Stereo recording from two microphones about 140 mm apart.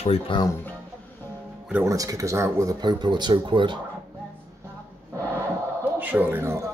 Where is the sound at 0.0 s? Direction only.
45° left (ahead or behind).